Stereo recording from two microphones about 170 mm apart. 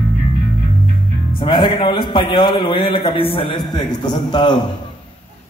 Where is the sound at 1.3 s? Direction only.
30° left (ahead or behind).